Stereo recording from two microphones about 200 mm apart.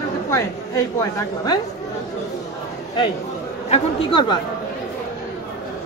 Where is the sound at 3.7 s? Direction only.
25° left (ahead or behind).